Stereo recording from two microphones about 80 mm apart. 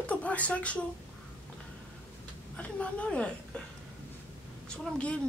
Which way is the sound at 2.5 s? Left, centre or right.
Centre.